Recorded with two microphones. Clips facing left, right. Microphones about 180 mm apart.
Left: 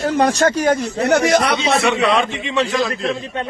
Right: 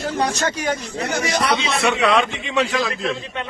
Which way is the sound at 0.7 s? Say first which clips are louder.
Left 8 dB; 45° left (ahead or behind).